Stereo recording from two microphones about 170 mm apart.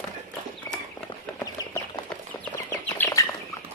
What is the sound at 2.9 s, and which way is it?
Bird, 15° left (ahead or behind).